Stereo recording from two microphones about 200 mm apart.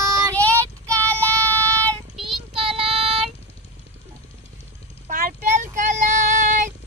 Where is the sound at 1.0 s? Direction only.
5° left (ahead or behind).